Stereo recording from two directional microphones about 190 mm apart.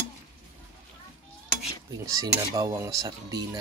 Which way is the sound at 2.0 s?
20° right (ahead or behind).